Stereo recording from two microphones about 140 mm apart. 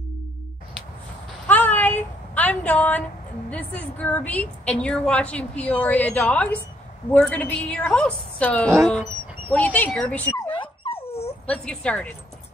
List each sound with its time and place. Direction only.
1.5 s a sound: 10° left (ahead or behind)
3.4 s a woman's voice: 10° left (ahead or behind)
10.4 s dog: 35° left (ahead or behind)
11.4 s a woman's voice: 5° left (ahead or behind)